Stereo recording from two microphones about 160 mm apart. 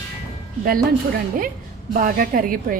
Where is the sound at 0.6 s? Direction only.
65° right (ahead or behind).